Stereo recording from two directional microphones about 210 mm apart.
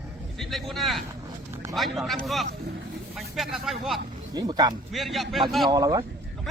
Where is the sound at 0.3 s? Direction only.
Centre (ahead or behind).